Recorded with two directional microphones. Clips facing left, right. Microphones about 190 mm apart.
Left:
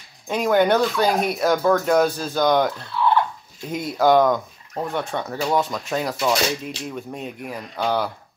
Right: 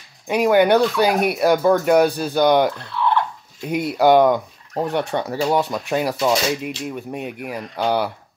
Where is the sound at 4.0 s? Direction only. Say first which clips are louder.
Right 2 dB; 5° right (ahead or behind).